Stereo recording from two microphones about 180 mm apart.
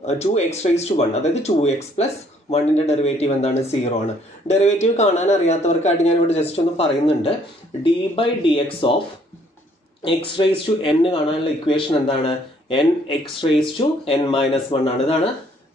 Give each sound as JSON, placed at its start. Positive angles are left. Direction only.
{"t": 0.0, "sound": "a man's voice", "side_deg": 35}
{"t": 10.0, "sound": "a man's voice", "side_deg": 25}